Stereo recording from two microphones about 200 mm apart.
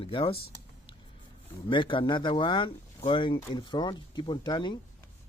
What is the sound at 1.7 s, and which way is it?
Speech, 25° left (ahead or behind).